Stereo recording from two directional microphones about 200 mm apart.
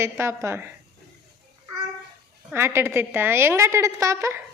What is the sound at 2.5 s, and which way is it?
A woman's voice, 10° right (ahead or behind).